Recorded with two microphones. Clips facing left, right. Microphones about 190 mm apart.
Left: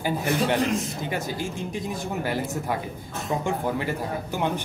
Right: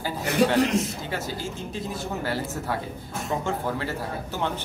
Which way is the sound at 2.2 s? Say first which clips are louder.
Left 2 dB; 15° left (ahead or behind).